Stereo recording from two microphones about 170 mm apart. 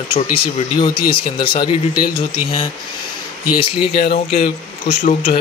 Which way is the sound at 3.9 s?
70° left (ahead or behind).